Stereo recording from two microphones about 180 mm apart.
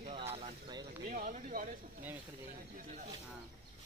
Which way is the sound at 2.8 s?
45° right (ahead or behind).